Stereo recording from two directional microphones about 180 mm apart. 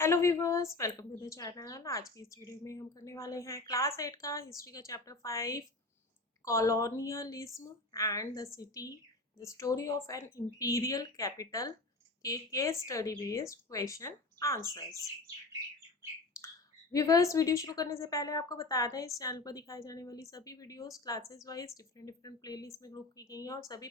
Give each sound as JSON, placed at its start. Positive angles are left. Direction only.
{"t": 0.0, "sound": "a woman's voice", "side_deg": 15}
{"t": 16.9, "sound": "a woman's voice", "side_deg": 20}